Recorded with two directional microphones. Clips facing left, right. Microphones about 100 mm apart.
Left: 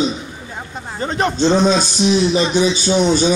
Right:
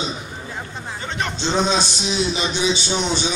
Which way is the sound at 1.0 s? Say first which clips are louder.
Left 10 dB; 40° left (ahead or behind).